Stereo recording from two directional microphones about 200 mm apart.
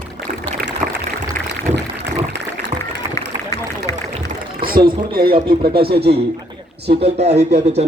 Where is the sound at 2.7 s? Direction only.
30° right (ahead or behind).